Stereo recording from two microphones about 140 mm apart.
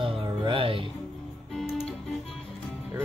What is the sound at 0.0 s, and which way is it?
Music, 40° right (ahead or behind).